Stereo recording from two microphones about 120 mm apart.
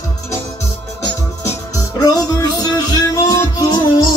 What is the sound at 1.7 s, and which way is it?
Music, 30° left (ahead or behind).